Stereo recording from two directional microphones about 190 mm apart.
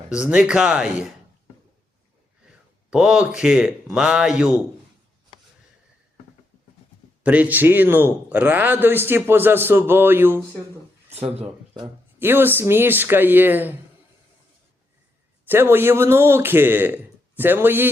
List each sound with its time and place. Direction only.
0.1 s speech: 5° right (ahead or behind)
2.5 s speech: 5° right (ahead or behind)
7.2 s a man's voice: 10° right (ahead or behind)
11.3 s speech: 25° right (ahead or behind)
12.2 s a man's voice: 10° right (ahead or behind)
15.4 s a man's voice: 10° right (ahead or behind)